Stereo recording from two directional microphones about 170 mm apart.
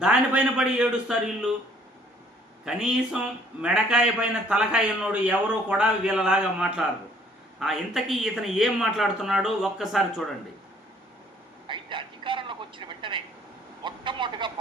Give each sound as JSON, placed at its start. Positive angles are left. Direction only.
{"t": 0.0, "sound": "a man's voice", "side_deg": -5}
{"t": 2.6, "sound": "a man's voice", "side_deg": -5}
{"t": 11.7, "sound": "a sound", "side_deg": -30}